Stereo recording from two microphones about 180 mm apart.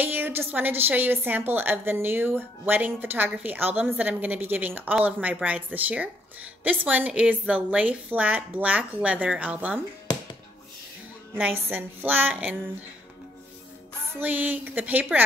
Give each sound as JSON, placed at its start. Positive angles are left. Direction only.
{"t": 0.0, "sound": "a woman's voice", "side_deg": -10}
{"t": 11.3, "sound": "a woman's voice", "side_deg": -10}
{"t": 14.2, "sound": "a woman's voice", "side_deg": -10}